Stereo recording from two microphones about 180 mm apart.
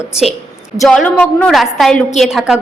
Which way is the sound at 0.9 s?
5° left (ahead or behind).